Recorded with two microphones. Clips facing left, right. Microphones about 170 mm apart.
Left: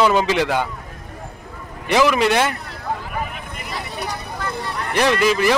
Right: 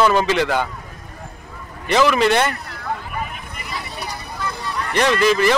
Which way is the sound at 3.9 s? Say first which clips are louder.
Left 2 dB; 50° left (ahead or behind).